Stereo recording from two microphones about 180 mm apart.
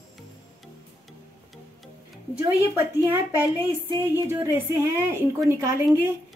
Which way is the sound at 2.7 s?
10° right (ahead or behind).